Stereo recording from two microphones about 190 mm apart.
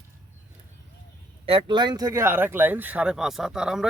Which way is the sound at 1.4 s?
25° right (ahead or behind).